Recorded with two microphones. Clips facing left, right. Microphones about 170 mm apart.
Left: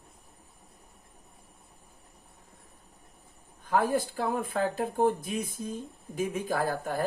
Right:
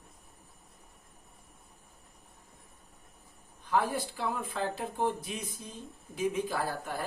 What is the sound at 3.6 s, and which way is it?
Speech, 45° left (ahead or behind).